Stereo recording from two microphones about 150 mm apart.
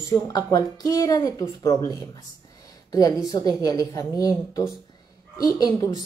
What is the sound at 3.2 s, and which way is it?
Speech, 25° left (ahead or behind).